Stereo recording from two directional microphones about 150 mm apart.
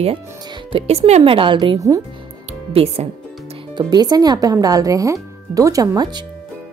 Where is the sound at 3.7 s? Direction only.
25° right (ahead or behind).